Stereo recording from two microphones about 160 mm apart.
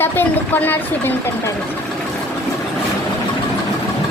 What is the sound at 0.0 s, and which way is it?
Speech, 10° left (ahead or behind).